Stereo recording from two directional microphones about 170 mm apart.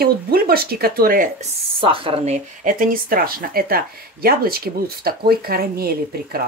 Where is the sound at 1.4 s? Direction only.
30° right (ahead or behind).